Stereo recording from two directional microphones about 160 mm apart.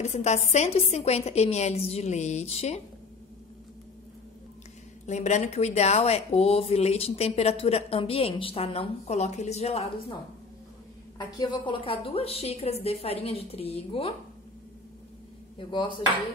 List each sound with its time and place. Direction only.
0.0 s speech: 45° left (ahead or behind)
5.0 s speech: 45° left (ahead or behind)
11.1 s speech: 25° left (ahead or behind)
15.5 s speech: 30° left (ahead or behind)